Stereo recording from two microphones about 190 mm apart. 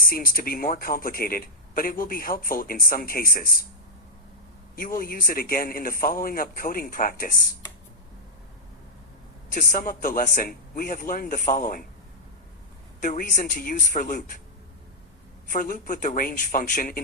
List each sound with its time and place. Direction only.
0.0 s speech: 50° left (ahead or behind)
4.9 s speech: 50° left (ahead or behind)
9.5 s speech: 45° left (ahead or behind)
13.0 s speech: 45° left (ahead or behind)
15.4 s speech: 45° left (ahead or behind)